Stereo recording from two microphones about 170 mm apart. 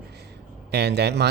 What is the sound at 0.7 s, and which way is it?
Speech, 75° right (ahead or behind).